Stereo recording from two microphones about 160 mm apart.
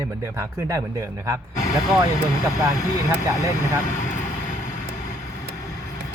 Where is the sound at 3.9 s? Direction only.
50° left (ahead or behind).